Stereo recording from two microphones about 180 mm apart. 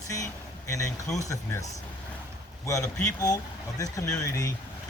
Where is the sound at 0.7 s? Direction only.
20° left (ahead or behind).